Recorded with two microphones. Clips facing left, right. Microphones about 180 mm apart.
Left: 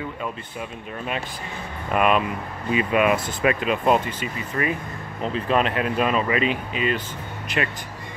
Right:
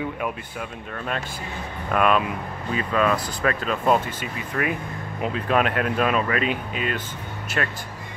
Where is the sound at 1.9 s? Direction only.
5° left (ahead or behind).